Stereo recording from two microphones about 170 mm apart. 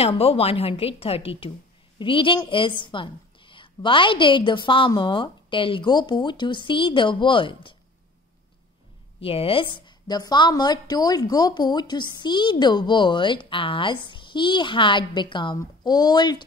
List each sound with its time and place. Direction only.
0.0 s a woman's voice: 35° left (ahead or behind)
9.2 s a woman's voice: 35° left (ahead or behind)